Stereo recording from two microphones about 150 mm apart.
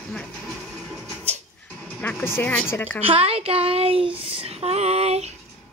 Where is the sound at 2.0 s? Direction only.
15° left (ahead or behind).